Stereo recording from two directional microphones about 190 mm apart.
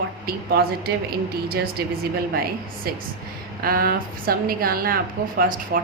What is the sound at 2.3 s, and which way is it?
Speech, 50° right (ahead or behind).